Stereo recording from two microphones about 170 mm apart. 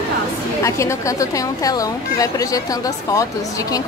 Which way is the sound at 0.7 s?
15° left (ahead or behind).